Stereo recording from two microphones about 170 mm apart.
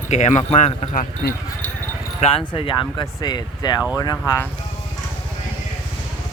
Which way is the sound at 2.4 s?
30° left (ahead or behind).